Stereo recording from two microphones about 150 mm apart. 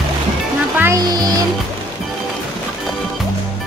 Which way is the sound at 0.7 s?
20° right (ahead or behind).